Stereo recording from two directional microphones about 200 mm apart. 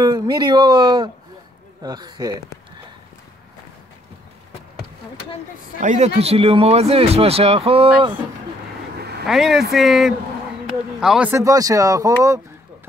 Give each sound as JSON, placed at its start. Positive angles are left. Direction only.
{"t": 0.0, "sound": "speech", "side_deg": -20}
{"t": 5.8, "sound": "speech", "side_deg": -35}
{"t": 9.2, "sound": "speech", "side_deg": 0}